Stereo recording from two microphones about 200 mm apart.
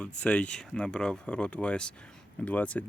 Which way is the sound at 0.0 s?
5° left (ahead or behind).